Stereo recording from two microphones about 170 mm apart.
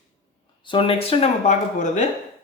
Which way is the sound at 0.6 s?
30° left (ahead or behind).